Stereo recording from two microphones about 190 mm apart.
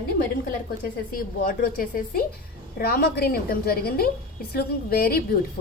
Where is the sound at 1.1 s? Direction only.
45° left (ahead or behind).